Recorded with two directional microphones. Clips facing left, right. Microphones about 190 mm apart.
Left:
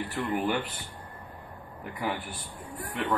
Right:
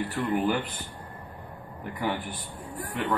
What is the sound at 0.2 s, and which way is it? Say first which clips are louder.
Speech: right 2 dB; centre (ahead or behind).